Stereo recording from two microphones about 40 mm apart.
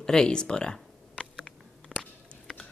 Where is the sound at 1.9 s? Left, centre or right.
Centre.